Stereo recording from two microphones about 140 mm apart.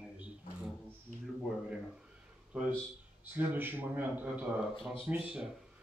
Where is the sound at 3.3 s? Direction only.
15° right (ahead or behind).